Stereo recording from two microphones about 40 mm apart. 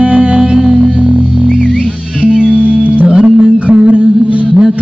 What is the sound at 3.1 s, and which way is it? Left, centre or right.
Music, right.